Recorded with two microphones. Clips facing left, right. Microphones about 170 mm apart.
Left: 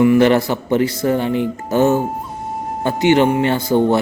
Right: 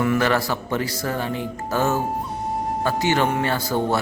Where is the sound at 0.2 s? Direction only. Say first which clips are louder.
Left 8 dB; 25° left (ahead or behind).